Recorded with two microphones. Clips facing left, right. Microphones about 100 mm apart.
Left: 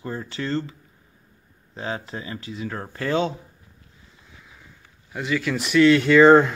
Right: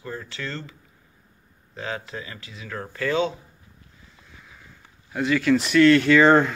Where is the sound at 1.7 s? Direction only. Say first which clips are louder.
Left 2 dB; 25° left (ahead or behind).